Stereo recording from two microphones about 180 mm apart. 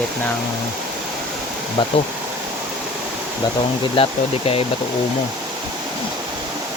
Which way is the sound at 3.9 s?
30° left (ahead or behind).